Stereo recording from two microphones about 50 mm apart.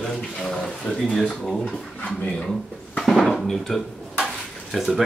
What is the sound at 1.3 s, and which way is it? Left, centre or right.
Speech, centre.